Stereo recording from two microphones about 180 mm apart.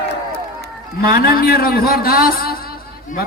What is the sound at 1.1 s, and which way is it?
A man's voice, 55° left (ahead or behind).